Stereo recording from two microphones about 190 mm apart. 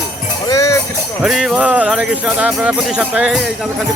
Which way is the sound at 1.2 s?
Centre (ahead or behind).